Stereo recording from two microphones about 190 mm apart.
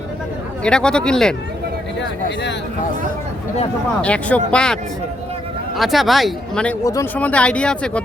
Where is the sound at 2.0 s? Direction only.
65° left (ahead or behind).